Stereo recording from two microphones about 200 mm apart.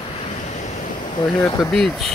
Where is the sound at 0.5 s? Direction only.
35° left (ahead or behind).